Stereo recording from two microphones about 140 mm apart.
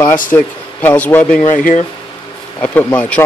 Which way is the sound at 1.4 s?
65° left (ahead or behind).